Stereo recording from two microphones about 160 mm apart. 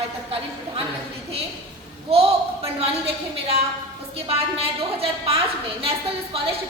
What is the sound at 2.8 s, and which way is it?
A woman's voice, 40° right (ahead or behind).